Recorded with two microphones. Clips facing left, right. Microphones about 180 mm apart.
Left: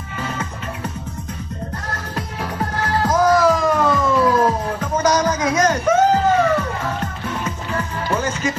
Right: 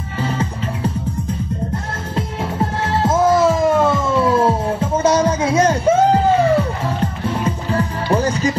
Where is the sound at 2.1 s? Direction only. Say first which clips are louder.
Right 5 dB; 25° right (ahead or behind).